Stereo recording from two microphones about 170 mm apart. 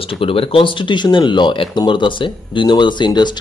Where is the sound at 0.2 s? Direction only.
35° left (ahead or behind).